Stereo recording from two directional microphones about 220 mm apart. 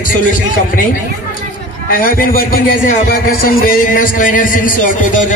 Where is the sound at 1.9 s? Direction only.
40° left (ahead or behind).